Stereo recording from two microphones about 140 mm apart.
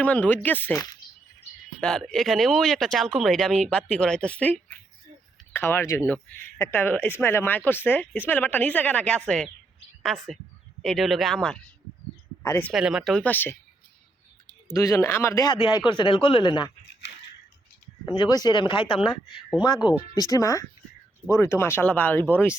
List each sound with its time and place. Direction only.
0.0 s speech: 10° left (ahead or behind)
1.8 s speech: 5° left (ahead or behind)
12.4 s speech: 15° left (ahead or behind)
12.7 s speech: 5° right (ahead or behind)
13.2 s speech: 15° left (ahead or behind)
14.7 s speech: 20° left (ahead or behind)
15.5 s speech: 35° left (ahead or behind)
18.0 s speech: 30° left (ahead or behind); by 22.5 s 15° left (ahead or behind)